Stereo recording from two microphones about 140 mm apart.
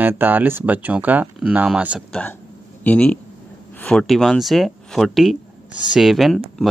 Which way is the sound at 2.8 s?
10° left (ahead or behind).